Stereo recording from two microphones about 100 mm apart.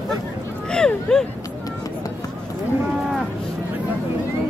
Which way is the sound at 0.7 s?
5° left (ahead or behind).